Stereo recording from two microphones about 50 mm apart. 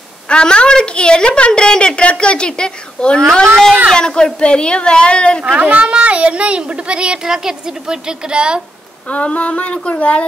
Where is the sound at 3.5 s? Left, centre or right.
Centre.